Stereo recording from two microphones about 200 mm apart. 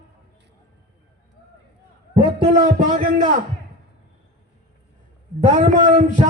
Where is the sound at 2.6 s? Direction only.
40° right (ahead or behind).